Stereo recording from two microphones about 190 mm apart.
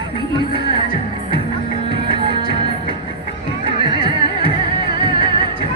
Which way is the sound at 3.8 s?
25° right (ahead or behind).